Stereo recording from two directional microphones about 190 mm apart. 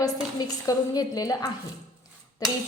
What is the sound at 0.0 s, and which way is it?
A woman's voice, 20° left (ahead or behind).